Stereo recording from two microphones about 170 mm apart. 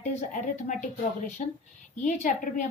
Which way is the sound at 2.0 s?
45° left (ahead or behind).